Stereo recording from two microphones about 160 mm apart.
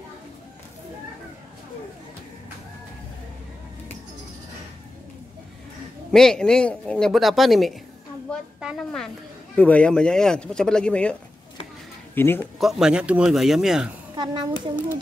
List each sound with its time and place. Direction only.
6.1 s a woman's voice: 5° left (ahead or behind)
12.2 s speech: 15° left (ahead or behind)
12.5 s speech: centre (ahead or behind)
14.1 s a child's voice: 30° right (ahead or behind)